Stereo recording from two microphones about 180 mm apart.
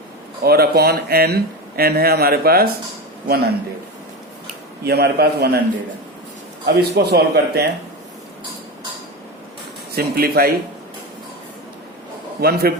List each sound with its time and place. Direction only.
0.4 s a man's voice: 60° right (ahead or behind)
4.8 s a man's voice: 60° right (ahead or behind)
6.7 s a man's voice: 65° right (ahead or behind)
9.9 s a man's voice: 60° right (ahead or behind)
12.4 s a man's voice: 60° right (ahead or behind)